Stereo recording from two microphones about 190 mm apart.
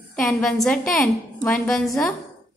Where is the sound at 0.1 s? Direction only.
5° left (ahead or behind).